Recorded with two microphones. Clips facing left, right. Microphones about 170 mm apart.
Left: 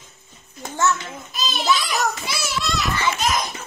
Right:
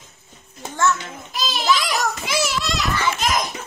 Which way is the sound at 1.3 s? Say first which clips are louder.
Right 1 dB; 90° right.